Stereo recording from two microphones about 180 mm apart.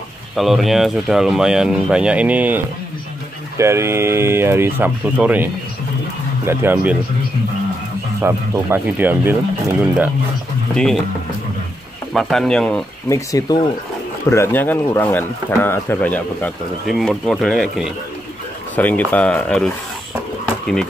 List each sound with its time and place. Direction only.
0.4 s speech: centre (ahead or behind)
8.2 s speech: 15° right (ahead or behind)
12.1 s speech: centre (ahead or behind)
13.1 s speech: 20° left (ahead or behind)